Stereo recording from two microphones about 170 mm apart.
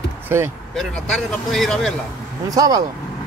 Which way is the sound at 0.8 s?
Centre (ahead or behind).